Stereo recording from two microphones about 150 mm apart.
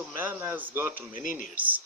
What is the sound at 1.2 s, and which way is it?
Speech, 60° left (ahead or behind).